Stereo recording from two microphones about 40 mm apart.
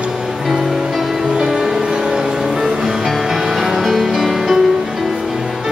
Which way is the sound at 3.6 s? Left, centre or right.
Centre.